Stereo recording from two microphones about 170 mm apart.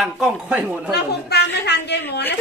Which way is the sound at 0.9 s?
70° left (ahead or behind).